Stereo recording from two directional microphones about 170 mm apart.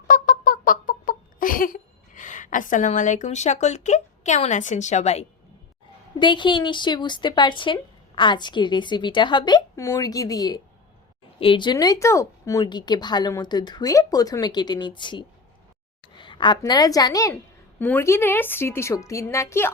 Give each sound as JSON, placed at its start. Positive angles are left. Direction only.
{"t": 0.1, "sound": "a sound", "side_deg": 55}
{"t": 6.1, "sound": "a woman's voice", "side_deg": 30}
{"t": 17.7, "sound": "a woman's voice", "side_deg": 10}